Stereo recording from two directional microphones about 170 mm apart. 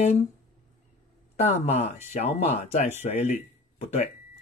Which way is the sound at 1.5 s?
40° left (ahead or behind).